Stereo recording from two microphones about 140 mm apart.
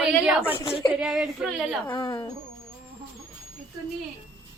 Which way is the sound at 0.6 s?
40° left (ahead or behind).